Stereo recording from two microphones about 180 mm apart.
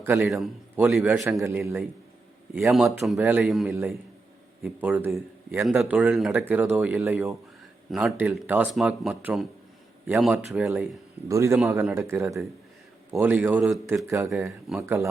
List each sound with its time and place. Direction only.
0.0 s a man's voice: 15° right (ahead or behind)
0.3 s speech: centre (ahead or behind)
1.5 s speech: 15° right (ahead or behind)
3.7 s speech: 15° right (ahead or behind)